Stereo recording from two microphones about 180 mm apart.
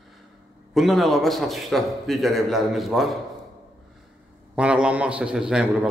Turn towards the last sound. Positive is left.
turn(degrees=-5)  # may be behind; listen again after turning